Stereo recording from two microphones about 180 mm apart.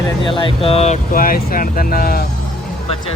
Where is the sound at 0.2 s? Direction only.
30° left (ahead or behind).